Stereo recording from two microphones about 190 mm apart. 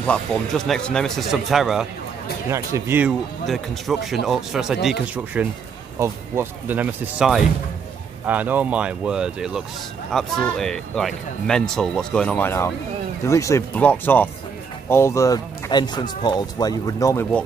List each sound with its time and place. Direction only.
0.0 s speech: 5° left (ahead or behind)
2.5 s speech: 15° right (ahead or behind); by 17.4 s 15° left (ahead or behind)